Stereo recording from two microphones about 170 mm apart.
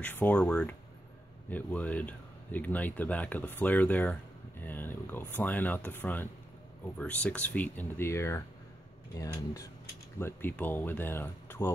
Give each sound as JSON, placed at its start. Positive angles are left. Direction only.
{"t": 0.0, "sound": "speech", "side_deg": 10}